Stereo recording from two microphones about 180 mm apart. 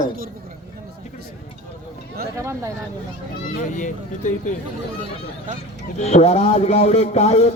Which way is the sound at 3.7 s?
45° left (ahead or behind).